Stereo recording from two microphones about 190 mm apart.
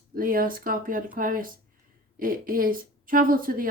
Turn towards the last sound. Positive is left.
turn(degrees=-50)  # may be behind; listen again after turning